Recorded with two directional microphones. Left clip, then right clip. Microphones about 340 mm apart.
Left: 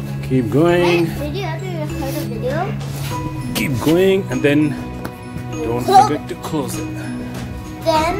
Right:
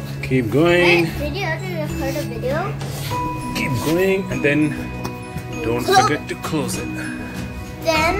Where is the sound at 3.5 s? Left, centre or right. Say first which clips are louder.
Left 6 dB; left.